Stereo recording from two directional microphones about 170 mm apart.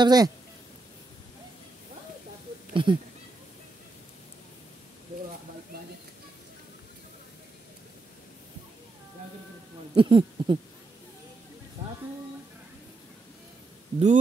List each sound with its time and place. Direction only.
0.0 s speech: 25° right (ahead or behind)
2.7 s speech: 30° right (ahead or behind)
9.9 s speech: 30° right (ahead or behind)
13.9 s speech: 45° right (ahead or behind)